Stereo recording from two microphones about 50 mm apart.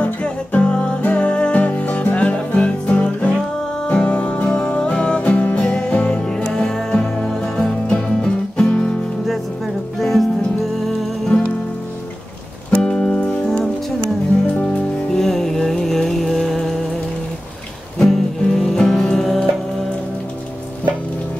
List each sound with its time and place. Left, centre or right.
0.0 s music: left
6.4 s music: centre
9.9 s music: centre
12.7 s music: left
14.5 s music: left
15.1 s music: centre
18.0 s music: centre